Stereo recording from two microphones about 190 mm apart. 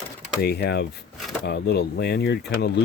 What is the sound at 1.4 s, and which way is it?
Speech, 60° left (ahead or behind).